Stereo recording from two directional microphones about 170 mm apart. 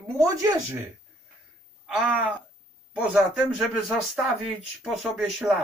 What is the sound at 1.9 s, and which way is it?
Speech, 5° right (ahead or behind).